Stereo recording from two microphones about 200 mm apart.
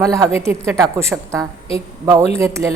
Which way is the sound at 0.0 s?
15° right (ahead or behind).